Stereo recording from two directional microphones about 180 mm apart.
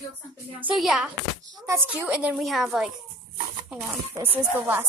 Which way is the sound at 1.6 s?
10° right (ahead or behind).